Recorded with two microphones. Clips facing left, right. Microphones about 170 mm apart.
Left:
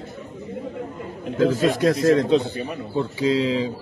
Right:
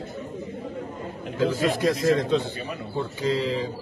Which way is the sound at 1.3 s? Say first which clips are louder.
Left 4 dB; 55° left (ahead or behind).